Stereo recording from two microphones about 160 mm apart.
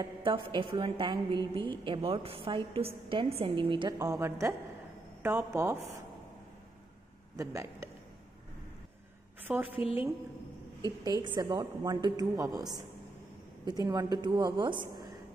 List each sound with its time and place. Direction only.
0.0 s a woman's voice: 30° right (ahead or behind)
9.5 s speech: 10° right (ahead or behind)
10.8 s a woman's voice: 25° right (ahead or behind)